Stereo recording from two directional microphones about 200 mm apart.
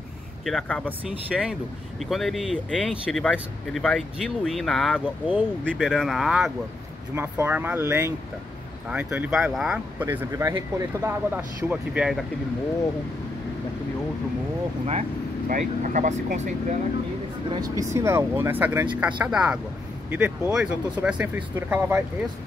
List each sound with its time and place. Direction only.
0.5 s speech: 5° left (ahead or behind)
14.9 s speech: 35° right (ahead or behind)
17.5 s speech: 20° right (ahead or behind)